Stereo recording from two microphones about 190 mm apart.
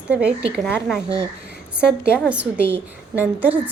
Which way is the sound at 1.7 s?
5° right (ahead or behind).